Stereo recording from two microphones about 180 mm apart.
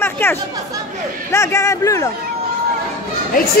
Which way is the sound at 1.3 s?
15° left (ahead or behind).